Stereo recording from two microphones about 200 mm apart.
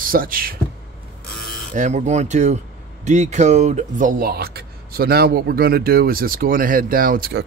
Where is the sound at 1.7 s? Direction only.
35° right (ahead or behind).